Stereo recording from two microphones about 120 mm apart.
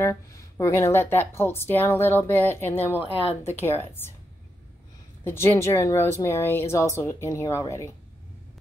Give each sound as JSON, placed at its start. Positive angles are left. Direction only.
{"t": 0.0, "sound": "a woman's voice", "side_deg": 25}
{"t": 2.9, "sound": "a woman's voice", "side_deg": -15}
{"t": 3.4, "sound": "a woman's voice", "side_deg": 20}
{"t": 5.2, "sound": "a woman's voice", "side_deg": 20}